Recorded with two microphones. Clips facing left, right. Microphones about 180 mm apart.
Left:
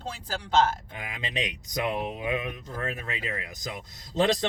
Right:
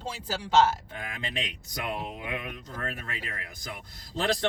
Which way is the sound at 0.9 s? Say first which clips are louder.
Left 1 dB; 20° left (ahead or behind).